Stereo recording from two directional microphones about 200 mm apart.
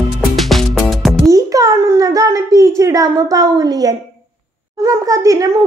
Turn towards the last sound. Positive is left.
turn(degrees=-15)  # may be behind; listen again after turning